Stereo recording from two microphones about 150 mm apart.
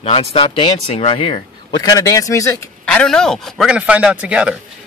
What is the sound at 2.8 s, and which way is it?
A man's voice, 5° left (ahead or behind).